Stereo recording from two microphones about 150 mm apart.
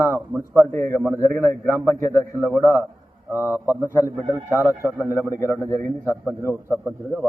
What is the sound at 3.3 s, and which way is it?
Speech, 15° right (ahead or behind).